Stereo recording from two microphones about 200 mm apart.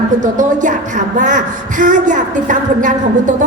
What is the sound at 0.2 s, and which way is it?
A woman's voice, 40° right (ahead or behind).